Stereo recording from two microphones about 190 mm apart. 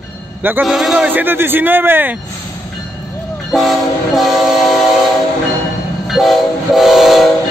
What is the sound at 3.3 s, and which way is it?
Train, centre (ahead or behind).